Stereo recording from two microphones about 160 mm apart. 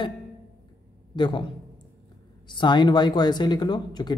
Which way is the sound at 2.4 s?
30° left (ahead or behind).